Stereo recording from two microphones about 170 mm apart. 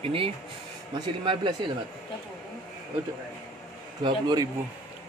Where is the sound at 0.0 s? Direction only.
30° right (ahead or behind).